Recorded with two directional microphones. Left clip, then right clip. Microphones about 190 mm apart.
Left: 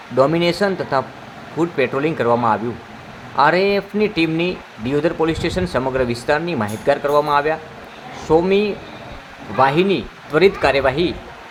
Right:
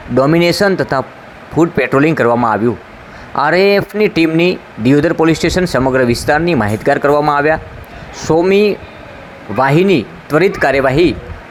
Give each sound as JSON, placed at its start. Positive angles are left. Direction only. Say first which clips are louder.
{"t": 0.2, "sound": "speech", "louder": "right 5 dB", "side_deg": -35}